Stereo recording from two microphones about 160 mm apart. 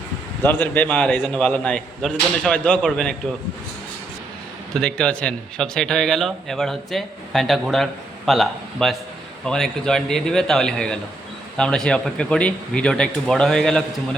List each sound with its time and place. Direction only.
0.4 s speech: 15° left (ahead or behind)
4.7 s a man's voice: 5° left (ahead or behind)